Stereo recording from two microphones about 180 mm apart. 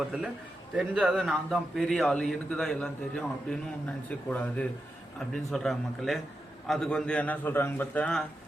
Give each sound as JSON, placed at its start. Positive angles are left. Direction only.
{"t": 0.0, "sound": "a man's voice", "side_deg": -5}